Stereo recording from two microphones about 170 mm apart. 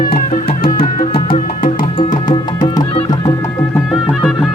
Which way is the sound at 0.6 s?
40° left (ahead or behind).